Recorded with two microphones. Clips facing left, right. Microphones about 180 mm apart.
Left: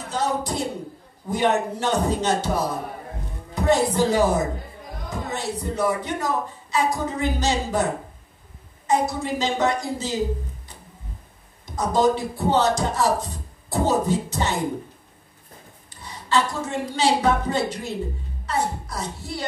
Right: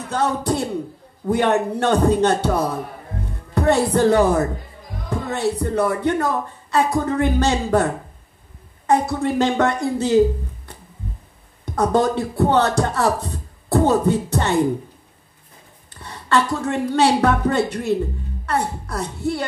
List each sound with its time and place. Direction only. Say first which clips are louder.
0.1 s speech: right 4 dB; 60° right (ahead or behind)
11.6 s speech: right 2 dB; 60° right (ahead or behind)
15.9 s a woman's voice: right 3 dB; 60° right (ahead or behind)